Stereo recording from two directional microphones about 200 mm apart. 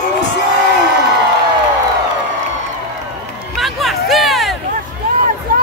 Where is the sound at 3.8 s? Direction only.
Centre (ahead or behind).